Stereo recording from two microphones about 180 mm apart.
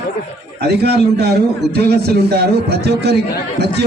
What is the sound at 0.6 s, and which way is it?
A man's voice, 65° right (ahead or behind).